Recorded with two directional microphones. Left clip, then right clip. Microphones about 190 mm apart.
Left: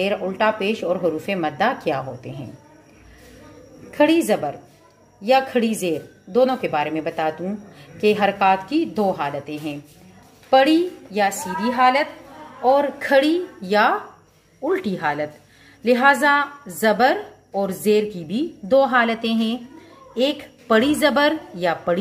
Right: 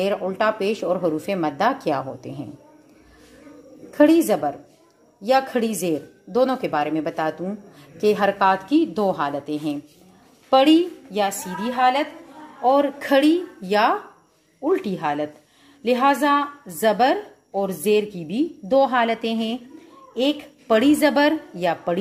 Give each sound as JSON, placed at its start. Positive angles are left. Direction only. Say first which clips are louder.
{"t": 0.0, "sound": "speech", "louder": "left 1 dB", "side_deg": -25}
{"t": 3.9, "sound": "a woman's voice", "louder": "right 1 dB", "side_deg": -25}